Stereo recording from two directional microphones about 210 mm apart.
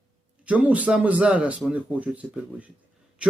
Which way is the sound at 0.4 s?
5° right (ahead or behind).